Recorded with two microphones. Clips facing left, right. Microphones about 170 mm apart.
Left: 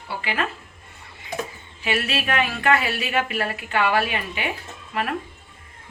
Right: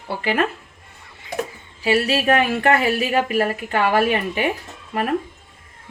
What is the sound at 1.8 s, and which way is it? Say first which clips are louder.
Speech: right 7 dB; 35° right (ahead or behind).